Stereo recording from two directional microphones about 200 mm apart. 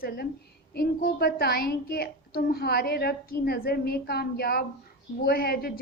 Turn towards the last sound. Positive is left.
turn(degrees=50)  # may be behind; listen again after turning